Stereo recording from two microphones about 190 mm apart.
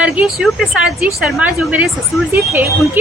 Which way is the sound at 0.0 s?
5° right (ahead or behind).